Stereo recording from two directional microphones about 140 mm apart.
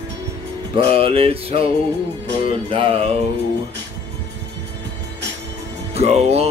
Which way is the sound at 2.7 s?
40° right (ahead or behind).